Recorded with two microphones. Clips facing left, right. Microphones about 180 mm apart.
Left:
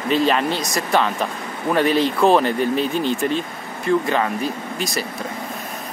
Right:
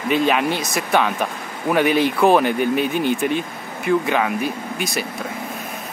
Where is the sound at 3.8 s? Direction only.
5° right (ahead or behind).